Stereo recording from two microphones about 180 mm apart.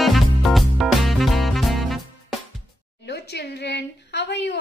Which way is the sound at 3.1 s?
65° left (ahead or behind).